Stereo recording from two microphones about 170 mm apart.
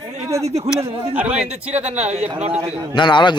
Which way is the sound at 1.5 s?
40° right (ahead or behind).